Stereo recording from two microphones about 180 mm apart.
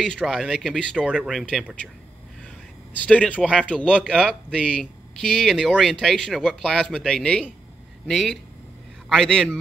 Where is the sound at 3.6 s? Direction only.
5° left (ahead or behind).